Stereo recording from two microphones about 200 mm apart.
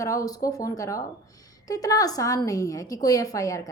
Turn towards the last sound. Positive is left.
turn(degrees=15)  # may be behind; listen again after turning